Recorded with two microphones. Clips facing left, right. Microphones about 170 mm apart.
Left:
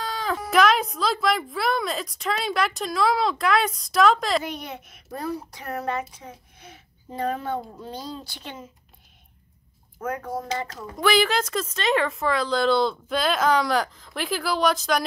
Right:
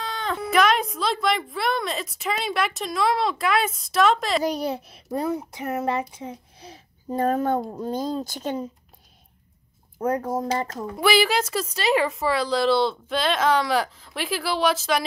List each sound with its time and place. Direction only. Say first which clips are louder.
0.0 s speech: even; centre (ahead or behind)
4.4 s speech: right 7 dB; 35° right (ahead or behind)
5.1 s speech: right 5 dB; 20° right (ahead or behind); by 8.6 s 40° right (ahead or behind)
9.9 s speech: right 5 dB; 35° right (ahead or behind)
11.0 s speech: right 1 dB; 10° right (ahead or behind)